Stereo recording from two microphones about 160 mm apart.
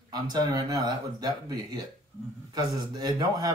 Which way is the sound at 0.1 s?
25° right (ahead or behind).